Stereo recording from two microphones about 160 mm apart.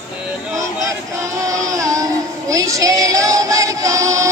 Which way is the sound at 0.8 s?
20° right (ahead or behind).